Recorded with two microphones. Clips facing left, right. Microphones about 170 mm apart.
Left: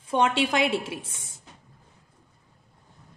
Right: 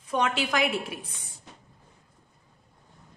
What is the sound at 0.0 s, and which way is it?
A woman's voice, 30° left (ahead or behind).